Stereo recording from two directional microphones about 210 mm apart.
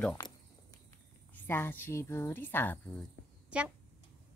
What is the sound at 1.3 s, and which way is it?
Speech, 10° left (ahead or behind).